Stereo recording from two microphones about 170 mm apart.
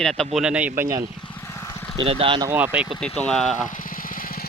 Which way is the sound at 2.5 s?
10° right (ahead or behind).